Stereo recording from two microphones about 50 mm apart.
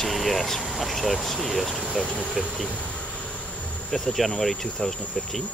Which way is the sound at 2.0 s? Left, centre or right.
Centre.